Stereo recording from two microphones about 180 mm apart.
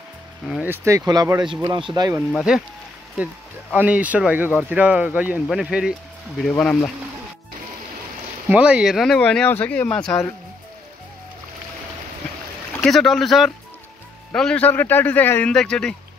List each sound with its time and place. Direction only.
0.5 s speech: 10° right (ahead or behind)
2.3 s speech: 5° right (ahead or behind)
3.7 s speech: 10° right (ahead or behind)
6.5 s a man's voice: 10° left (ahead or behind)
8.5 s speech: 5° right (ahead or behind)
12.8 s a man's voice: centre (ahead or behind)